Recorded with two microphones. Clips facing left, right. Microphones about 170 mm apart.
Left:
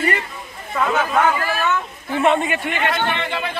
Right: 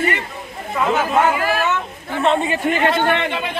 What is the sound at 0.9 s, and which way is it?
Speech, 10° right (ahead or behind).